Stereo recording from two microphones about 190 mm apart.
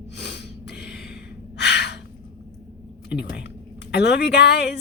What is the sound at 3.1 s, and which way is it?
Speech, 60° left (ahead or behind).